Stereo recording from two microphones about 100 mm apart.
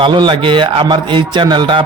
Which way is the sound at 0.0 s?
50° right (ahead or behind).